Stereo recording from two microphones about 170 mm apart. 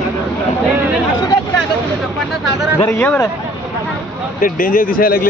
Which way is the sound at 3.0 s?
10° left (ahead or behind).